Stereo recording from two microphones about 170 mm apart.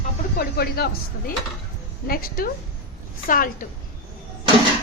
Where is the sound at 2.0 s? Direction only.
60° left (ahead or behind).